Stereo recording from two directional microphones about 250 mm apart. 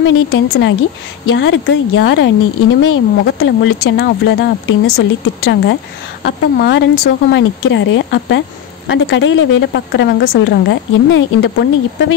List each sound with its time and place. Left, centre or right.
0.0 s speech: left